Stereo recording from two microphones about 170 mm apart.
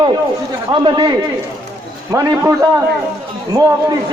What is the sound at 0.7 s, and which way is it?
Speech, 25° right (ahead or behind).